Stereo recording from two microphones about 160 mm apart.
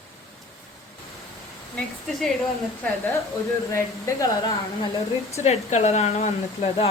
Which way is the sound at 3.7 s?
20° left (ahead or behind).